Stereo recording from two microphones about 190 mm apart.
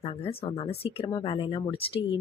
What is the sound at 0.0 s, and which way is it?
Speech, 30° left (ahead or behind).